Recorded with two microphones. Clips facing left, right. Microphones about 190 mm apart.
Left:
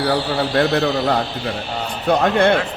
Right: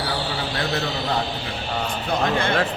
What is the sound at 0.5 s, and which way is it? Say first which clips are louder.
A man's voice: left 11 dB; 60° left (ahead or behind).